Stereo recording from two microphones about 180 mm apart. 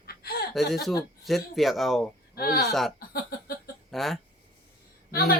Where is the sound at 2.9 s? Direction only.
55° left (ahead or behind).